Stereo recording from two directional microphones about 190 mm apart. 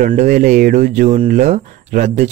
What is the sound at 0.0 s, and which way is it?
Speech, 40° right (ahead or behind).